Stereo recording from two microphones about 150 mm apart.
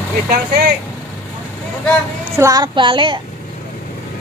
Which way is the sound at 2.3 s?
20° right (ahead or behind).